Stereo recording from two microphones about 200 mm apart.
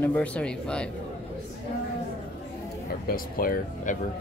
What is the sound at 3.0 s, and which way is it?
Speech, 45° left (ahead or behind).